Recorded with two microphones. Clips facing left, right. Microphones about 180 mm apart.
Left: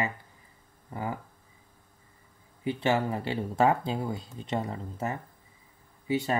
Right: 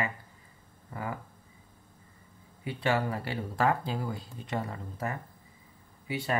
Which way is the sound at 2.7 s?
25° left (ahead or behind).